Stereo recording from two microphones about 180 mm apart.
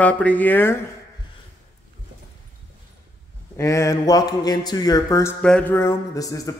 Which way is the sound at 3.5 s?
15° left (ahead or behind).